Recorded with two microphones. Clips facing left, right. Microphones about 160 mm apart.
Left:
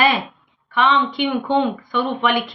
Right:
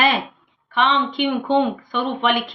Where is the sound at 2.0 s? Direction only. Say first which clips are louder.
Left 1 dB; 40° left (ahead or behind).